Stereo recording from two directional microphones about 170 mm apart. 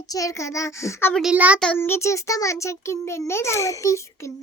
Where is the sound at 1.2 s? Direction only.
5° right (ahead or behind).